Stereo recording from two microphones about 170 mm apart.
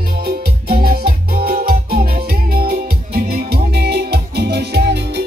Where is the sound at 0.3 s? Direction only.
60° right (ahead or behind).